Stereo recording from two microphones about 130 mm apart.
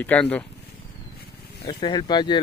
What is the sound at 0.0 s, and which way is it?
Speech, 10° left (ahead or behind).